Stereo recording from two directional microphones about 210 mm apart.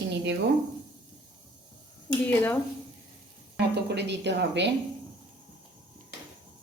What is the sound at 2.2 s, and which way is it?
Speech, 5° left (ahead or behind).